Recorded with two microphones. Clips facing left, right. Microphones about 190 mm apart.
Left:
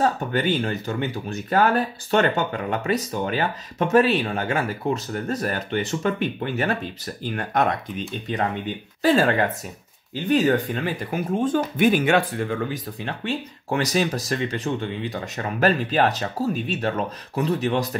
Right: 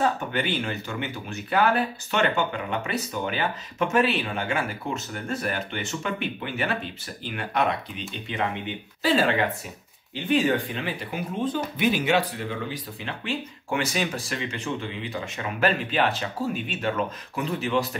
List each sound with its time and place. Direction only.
0.0 s speech: 40° left (ahead or behind)